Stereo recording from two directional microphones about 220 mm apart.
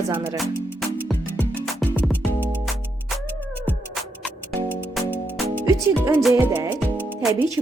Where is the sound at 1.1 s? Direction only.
Centre (ahead or behind).